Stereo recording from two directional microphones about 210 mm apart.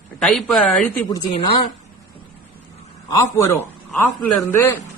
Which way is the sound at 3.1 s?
15° left (ahead or behind).